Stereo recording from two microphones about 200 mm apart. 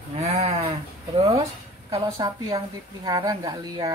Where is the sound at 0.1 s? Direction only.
35° right (ahead or behind).